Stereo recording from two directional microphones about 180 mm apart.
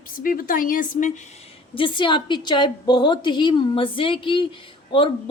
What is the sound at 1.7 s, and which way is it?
A woman's voice, 25° left (ahead or behind).